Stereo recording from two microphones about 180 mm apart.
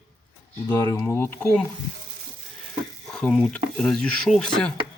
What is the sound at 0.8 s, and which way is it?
Speech, 15° left (ahead or behind).